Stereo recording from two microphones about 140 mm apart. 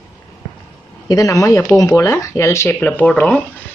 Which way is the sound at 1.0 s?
25° left (ahead or behind).